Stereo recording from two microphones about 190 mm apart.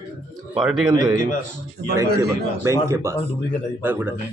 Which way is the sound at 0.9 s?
20° right (ahead or behind).